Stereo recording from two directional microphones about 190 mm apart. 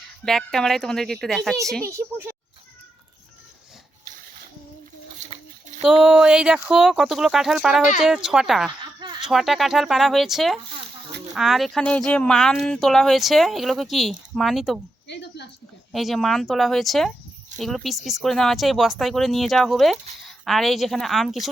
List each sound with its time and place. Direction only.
0.3 s speech: centre (ahead or behind)
1.8 s a child's voice: 15° right (ahead or behind)
5.8 s speech: 5° right (ahead or behind)
8.8 s a sound: 25° right (ahead or behind)
9.2 s speech: centre (ahead or behind)
15.0 s speech: 65° left (ahead or behind)
15.9 s speech: centre (ahead or behind)